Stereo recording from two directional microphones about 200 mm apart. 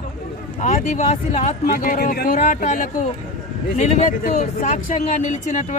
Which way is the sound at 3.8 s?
35° left (ahead or behind).